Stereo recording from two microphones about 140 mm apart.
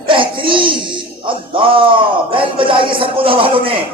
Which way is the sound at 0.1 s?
35° right (ahead or behind).